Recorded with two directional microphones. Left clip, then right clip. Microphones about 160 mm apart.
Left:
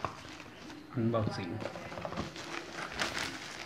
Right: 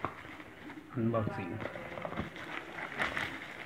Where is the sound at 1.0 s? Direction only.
5° left (ahead or behind).